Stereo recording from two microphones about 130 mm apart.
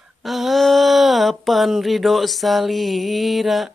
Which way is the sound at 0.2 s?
Centre (ahead or behind).